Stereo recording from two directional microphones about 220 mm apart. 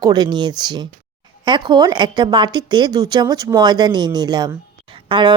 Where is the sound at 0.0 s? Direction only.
20° right (ahead or behind).